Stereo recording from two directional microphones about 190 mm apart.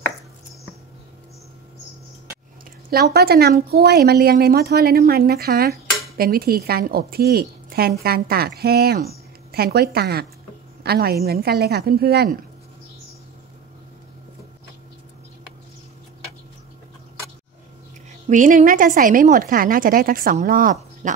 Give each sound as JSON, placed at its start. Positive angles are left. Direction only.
{"t": 2.9, "sound": "speech", "side_deg": -55}
{"t": 18.3, "sound": "a woman's voice", "side_deg": -40}